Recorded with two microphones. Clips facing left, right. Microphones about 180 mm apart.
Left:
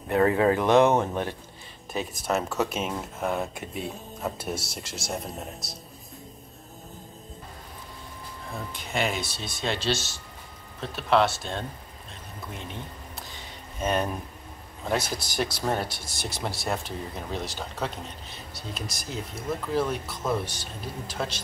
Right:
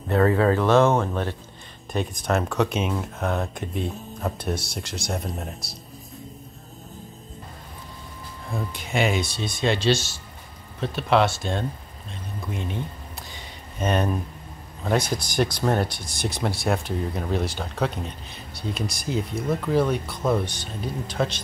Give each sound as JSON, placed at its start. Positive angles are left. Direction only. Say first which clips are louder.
{"t": 0.1, "sound": "speech", "louder": "right 2 dB", "side_deg": 20}
{"t": 1.9, "sound": "speech", "louder": "right 3 dB", "side_deg": 5}
{"t": 8.7, "sound": "speech", "louder": "right 5 dB", "side_deg": 0}
{"t": 13.7, "sound": "speech", "louder": "right 3 dB", "side_deg": 0}